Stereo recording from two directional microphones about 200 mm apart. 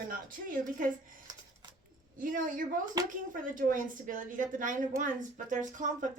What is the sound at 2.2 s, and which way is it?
Speech, 40° right (ahead or behind).